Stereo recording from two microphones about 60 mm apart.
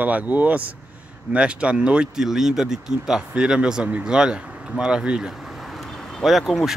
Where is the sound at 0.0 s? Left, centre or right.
Right; by 5.9 s centre.